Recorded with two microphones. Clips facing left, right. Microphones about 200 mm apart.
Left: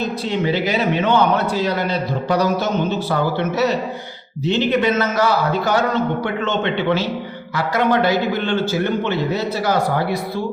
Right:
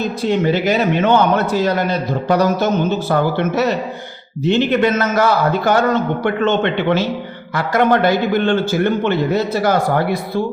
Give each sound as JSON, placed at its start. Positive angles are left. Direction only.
{"t": 0.3, "sound": "a man's voice", "side_deg": -45}